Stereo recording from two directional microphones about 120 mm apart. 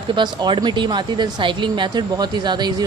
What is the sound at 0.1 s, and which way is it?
Speech, 40° right (ahead or behind).